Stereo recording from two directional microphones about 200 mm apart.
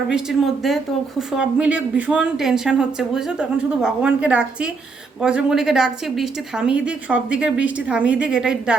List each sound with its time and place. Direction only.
0.1 s a woman's voice: centre (ahead or behind)